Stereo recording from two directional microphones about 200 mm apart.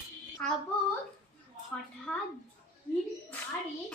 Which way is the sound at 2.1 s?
5° left (ahead or behind).